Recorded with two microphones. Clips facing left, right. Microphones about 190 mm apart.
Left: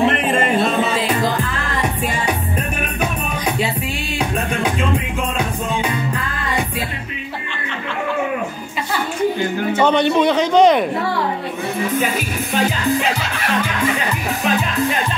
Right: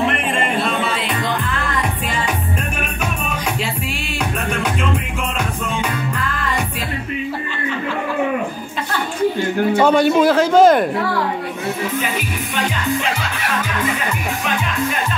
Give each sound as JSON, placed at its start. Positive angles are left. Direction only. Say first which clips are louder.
{"t": 0.3, "sound": "music", "louder": "left 3 dB", "side_deg": 40}
{"t": 9.8, "sound": "a man's voice", "louder": "right 1 dB", "side_deg": -5}